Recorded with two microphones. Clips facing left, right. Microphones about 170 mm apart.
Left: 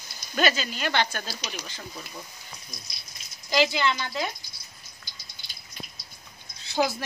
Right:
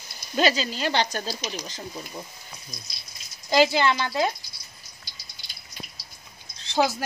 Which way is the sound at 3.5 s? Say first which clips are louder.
Right 4 dB; 50° right (ahead or behind).